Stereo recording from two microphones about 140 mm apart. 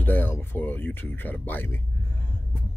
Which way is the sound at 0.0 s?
15° left (ahead or behind).